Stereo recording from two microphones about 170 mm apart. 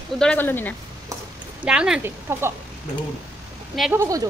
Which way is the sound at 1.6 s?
5° right (ahead or behind).